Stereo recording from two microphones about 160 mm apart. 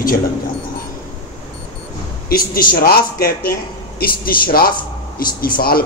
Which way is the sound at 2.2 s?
65° left (ahead or behind).